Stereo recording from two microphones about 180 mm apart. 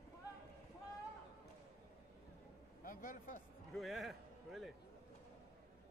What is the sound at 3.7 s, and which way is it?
A man's voice, centre (ahead or behind).